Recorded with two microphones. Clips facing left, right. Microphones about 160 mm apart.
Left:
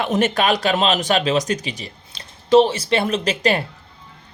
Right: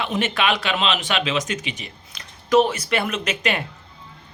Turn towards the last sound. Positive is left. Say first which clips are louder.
# left 5 dB
turn(degrees=35)  # may be behind; listen again after turning